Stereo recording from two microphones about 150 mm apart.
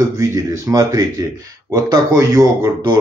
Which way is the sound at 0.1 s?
20° right (ahead or behind).